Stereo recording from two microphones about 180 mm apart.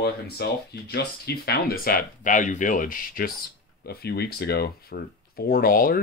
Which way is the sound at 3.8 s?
60° left (ahead or behind).